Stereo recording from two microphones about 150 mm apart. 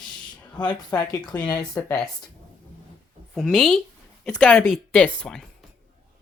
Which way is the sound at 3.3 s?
5° left (ahead or behind).